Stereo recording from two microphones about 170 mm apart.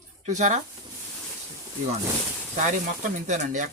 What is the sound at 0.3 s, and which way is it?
Speech, 45° right (ahead or behind).